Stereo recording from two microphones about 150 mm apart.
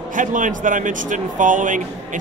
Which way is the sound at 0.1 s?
60° right (ahead or behind).